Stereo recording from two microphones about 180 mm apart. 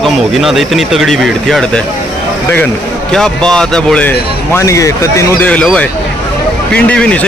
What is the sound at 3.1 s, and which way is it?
A man's voice, 5° left (ahead or behind).